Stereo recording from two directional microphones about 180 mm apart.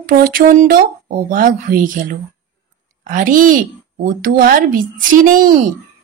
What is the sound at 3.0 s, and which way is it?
Speech, 50° right (ahead or behind).